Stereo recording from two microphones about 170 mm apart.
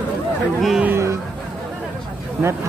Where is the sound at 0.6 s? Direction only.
5° right (ahead or behind).